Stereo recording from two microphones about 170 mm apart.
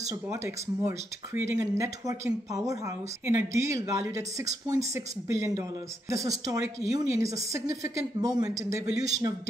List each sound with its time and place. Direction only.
0.1 s speech: 15° right (ahead or behind)